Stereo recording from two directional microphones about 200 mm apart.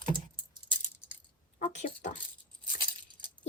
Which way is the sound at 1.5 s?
40° left (ahead or behind).